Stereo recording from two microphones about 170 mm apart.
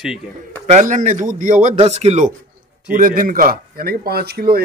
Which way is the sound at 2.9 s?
55° right (ahead or behind).